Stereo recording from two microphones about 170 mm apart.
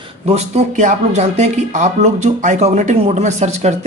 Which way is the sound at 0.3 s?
45° right (ahead or behind).